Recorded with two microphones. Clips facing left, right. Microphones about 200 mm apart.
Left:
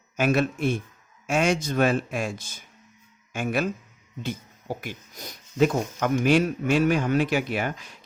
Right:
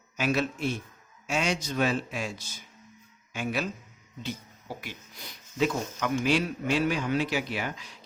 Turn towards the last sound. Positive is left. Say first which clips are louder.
# left 5 dB
turn(degrees=50)  # may be behind; listen again after turning